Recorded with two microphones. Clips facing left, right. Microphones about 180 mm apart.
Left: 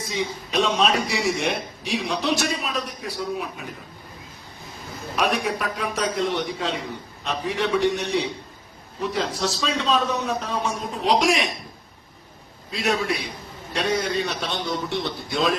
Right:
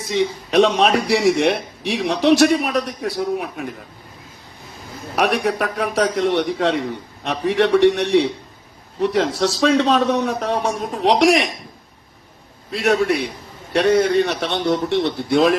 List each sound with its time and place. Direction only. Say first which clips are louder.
0.1 s a man's voice: right 9 dB; 70° right (ahead or behind)
5.1 s a man's voice: right 5 dB; 70° right (ahead or behind)
12.7 s a man's voice: right 7 dB; 65° right (ahead or behind)